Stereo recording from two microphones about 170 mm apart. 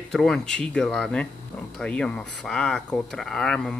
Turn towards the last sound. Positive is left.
turn(degrees=5)  # may be behind; listen again after turning